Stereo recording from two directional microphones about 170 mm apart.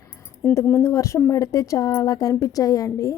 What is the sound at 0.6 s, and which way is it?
Speech, 15° left (ahead or behind).